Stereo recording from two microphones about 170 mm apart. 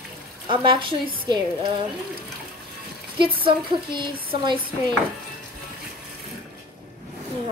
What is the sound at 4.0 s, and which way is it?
Speech, 30° right (ahead or behind).